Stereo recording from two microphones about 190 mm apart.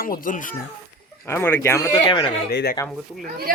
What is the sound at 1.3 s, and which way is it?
Speech, 10° left (ahead or behind).